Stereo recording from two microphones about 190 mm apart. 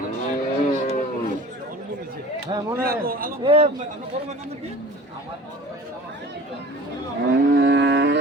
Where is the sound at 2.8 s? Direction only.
50° right (ahead or behind).